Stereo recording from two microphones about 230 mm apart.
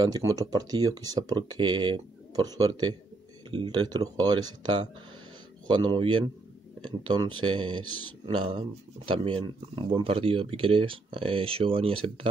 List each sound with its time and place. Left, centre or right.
0.0 s speech: centre